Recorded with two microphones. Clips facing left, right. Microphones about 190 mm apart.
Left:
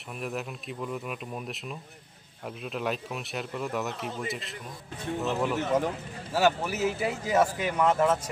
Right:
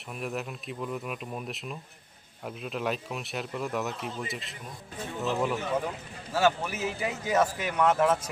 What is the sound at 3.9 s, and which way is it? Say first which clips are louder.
Speech: left 1 dB; 60° left (ahead or behind).